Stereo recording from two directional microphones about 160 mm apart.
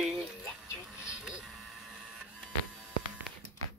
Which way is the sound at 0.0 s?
5° right (ahead or behind).